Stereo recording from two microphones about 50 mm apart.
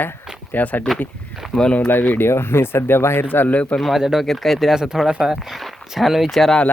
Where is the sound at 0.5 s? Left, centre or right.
Left.